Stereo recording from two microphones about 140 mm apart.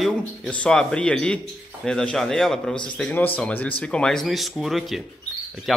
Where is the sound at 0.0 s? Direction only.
5° left (ahead or behind).